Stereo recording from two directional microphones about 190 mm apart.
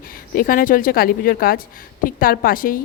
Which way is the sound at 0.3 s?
50° left (ahead or behind).